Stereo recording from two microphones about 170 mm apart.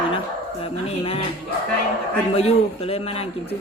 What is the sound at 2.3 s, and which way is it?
Speech, 35° left (ahead or behind).